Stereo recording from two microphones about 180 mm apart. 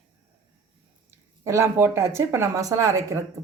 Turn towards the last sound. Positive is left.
turn(degrees=-20)  # may be behind; listen again after turning